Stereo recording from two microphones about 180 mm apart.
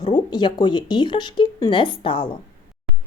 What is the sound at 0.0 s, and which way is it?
Speech, 25° left (ahead or behind).